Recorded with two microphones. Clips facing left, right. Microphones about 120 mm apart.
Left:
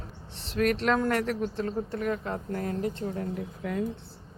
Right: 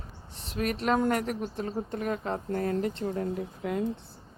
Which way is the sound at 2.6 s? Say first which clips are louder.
Right 2 dB; 40° right (ahead or behind).